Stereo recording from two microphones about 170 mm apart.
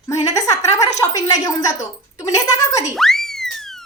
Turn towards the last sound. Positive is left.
turn(degrees=0)  # may be behind; listen again after turning